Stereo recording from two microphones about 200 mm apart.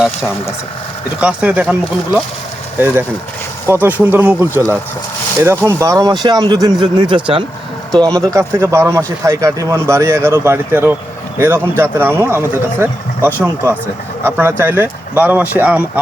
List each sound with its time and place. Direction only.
1.2 s speech: 5° right (ahead or behind)
2.7 s speech: 10° right (ahead or behind)